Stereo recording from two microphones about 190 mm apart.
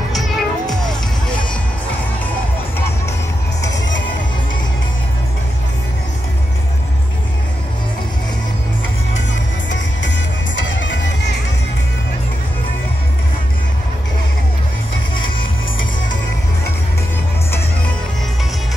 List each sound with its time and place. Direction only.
0.1 s music: centre (ahead or behind)
10.9 s music: 65° left (ahead or behind)